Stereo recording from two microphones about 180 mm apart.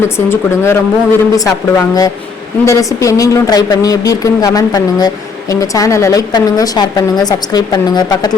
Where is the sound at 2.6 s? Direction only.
15° left (ahead or behind).